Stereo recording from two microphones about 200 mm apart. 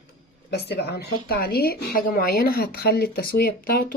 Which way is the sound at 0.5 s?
55° left (ahead or behind).